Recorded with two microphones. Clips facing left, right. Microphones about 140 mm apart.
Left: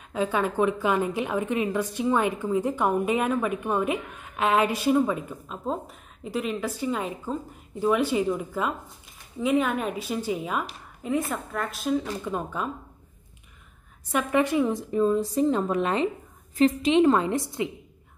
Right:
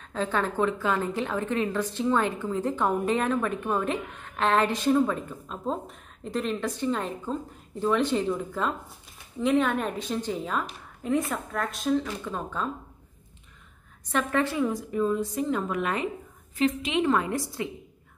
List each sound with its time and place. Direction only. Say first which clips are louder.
0.1 s a woman's voice: left 2 dB; 10° left (ahead or behind)
12.3 s a woman's voice: left 2 dB; 15° left (ahead or behind)
14.1 s a woman's voice: left 3 dB; 15° left (ahead or behind)
14.9 s a woman's voice: left 3 dB; 30° left (ahead or behind)